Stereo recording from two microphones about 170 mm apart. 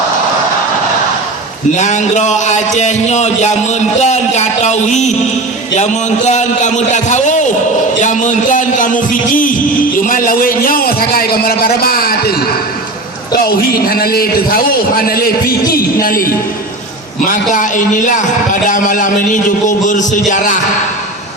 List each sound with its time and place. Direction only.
1.7 s a man's voice: 45° left (ahead or behind)
17.5 s speech: 50° left (ahead or behind)